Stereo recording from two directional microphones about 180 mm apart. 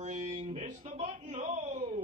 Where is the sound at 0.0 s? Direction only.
40° right (ahead or behind).